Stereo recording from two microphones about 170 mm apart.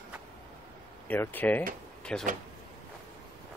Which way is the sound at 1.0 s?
10° left (ahead or behind).